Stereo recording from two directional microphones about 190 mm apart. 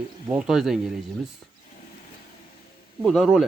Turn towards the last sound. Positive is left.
turn(degrees=0)  # may be behind; listen again after turning